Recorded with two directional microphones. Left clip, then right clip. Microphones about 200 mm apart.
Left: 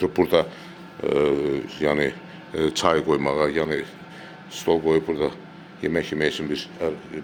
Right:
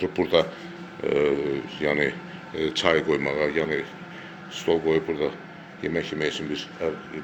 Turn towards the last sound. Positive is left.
turn(degrees=30)  # may be behind; listen again after turning